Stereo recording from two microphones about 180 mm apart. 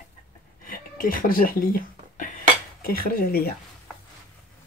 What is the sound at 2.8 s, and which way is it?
Speech, 55° left (ahead or behind).